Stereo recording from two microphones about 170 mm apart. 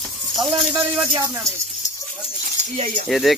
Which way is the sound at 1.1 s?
20° right (ahead or behind).